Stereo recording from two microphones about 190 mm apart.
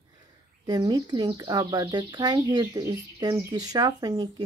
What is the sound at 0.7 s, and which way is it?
Speech, 20° right (ahead or behind).